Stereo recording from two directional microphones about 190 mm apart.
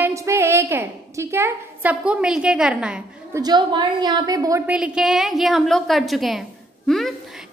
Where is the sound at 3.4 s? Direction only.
20° right (ahead or behind).